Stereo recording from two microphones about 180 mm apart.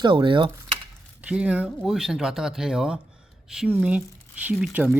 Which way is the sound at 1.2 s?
5° right (ahead or behind).